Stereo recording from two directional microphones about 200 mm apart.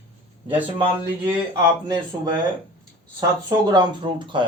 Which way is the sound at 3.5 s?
20° right (ahead or behind).